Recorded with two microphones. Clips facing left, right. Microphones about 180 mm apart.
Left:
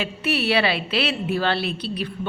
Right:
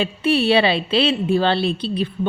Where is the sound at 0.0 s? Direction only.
30° right (ahead or behind).